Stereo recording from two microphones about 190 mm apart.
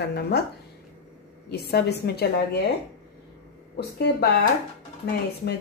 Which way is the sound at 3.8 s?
55° left (ahead or behind).